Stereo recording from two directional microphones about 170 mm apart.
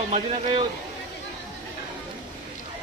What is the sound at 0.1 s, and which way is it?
Speech, 35° right (ahead or behind).